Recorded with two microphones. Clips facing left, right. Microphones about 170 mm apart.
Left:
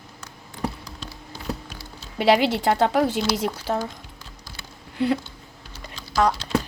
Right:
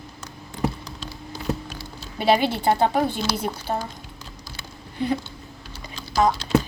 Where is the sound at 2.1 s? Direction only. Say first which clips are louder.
Left 1 dB; 85° left.